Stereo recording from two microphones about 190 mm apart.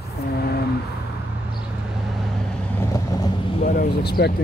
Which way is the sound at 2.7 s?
20° left (ahead or behind).